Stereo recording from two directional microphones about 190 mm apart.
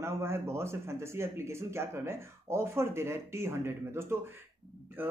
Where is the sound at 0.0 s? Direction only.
15° right (ahead or behind).